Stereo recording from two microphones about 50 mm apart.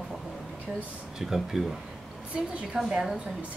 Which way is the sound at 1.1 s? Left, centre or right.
Centre.